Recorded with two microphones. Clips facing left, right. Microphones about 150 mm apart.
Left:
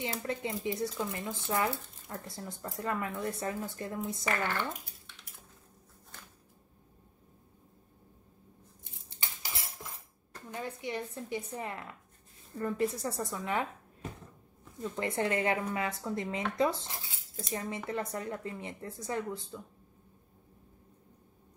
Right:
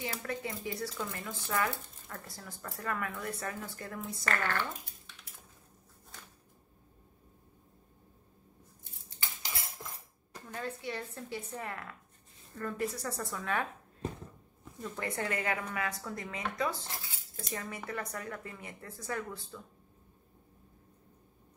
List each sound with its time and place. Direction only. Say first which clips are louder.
0.0 s speech: left 3 dB; 25° left (ahead or behind)
10.5 s a woman's voice: left 1 dB; 15° left (ahead or behind)
14.8 s speech: left 4 dB; 25° left (ahead or behind)